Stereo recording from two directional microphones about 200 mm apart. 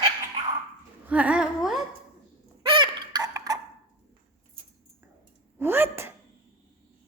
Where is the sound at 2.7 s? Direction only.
20° right (ahead or behind).